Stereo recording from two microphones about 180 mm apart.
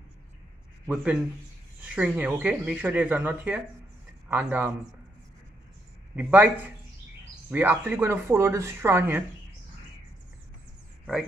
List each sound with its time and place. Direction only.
0.8 s speech: 5° right (ahead or behind)
6.1 s speech: 10° right (ahead or behind)